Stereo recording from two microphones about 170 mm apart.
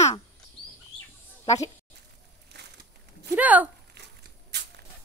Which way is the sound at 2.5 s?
80° right.